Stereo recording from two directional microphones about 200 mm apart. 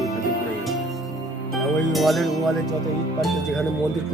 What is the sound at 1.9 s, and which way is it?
Speech, centre (ahead or behind).